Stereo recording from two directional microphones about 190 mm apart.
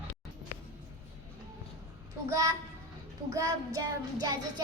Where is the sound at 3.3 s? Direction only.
15° right (ahead or behind).